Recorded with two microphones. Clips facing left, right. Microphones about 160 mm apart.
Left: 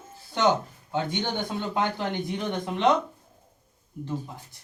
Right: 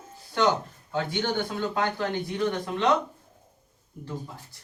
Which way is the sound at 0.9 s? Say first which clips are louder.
Even; 20° left (ahead or behind).